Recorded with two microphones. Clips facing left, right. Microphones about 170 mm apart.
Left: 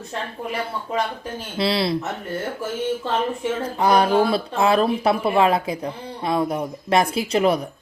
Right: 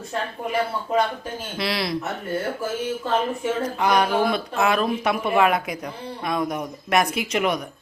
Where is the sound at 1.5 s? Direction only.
30° left (ahead or behind).